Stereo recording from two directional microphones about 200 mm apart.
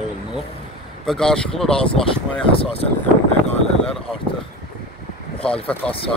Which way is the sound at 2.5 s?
30° left (ahead or behind).